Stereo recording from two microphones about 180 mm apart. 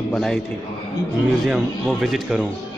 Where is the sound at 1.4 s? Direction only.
5° right (ahead or behind).